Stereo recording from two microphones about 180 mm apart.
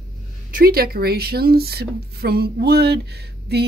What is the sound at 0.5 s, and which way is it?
Speech, 55° right (ahead or behind).